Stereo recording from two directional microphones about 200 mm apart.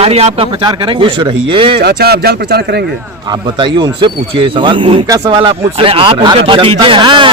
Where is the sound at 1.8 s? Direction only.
50° right (ahead or behind).